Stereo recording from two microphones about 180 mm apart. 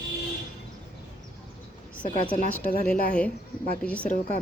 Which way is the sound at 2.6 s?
50° left (ahead or behind).